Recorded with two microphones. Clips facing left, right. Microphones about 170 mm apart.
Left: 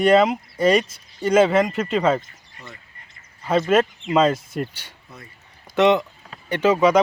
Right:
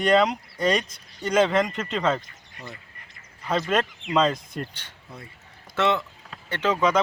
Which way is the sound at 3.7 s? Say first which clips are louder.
Left 5 dB; 5° left (ahead or behind).